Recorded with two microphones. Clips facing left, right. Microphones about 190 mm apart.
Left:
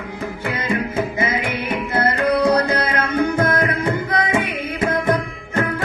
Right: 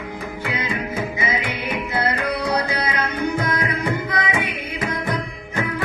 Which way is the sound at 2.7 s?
50° left (ahead or behind).